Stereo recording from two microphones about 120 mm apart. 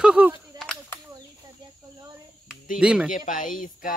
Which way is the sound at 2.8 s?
10° right (ahead or behind).